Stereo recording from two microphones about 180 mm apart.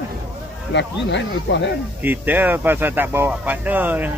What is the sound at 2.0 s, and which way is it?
Speech, 10° right (ahead or behind).